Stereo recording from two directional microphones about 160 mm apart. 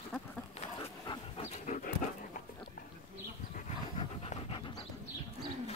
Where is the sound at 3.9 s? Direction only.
40° left (ahead or behind).